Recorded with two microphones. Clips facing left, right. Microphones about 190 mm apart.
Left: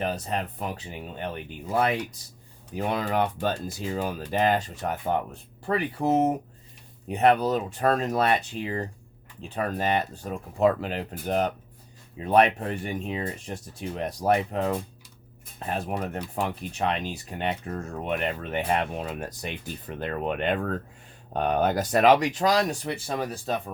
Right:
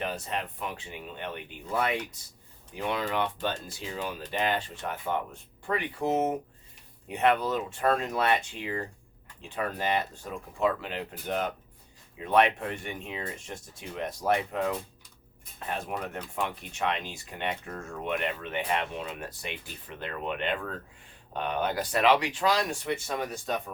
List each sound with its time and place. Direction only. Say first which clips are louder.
0.0 s speech: left 4 dB; 40° left (ahead or behind)